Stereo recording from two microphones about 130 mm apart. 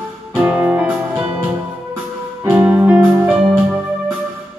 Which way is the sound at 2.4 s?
15° right (ahead or behind).